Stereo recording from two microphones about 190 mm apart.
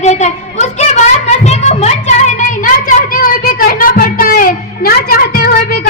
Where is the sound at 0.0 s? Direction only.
35° left (ahead or behind).